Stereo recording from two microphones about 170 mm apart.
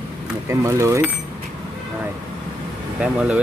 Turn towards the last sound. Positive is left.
turn(degrees=-10)  # may be behind; listen again after turning